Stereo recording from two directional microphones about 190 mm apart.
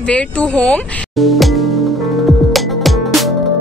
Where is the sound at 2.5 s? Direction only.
Centre (ahead or behind).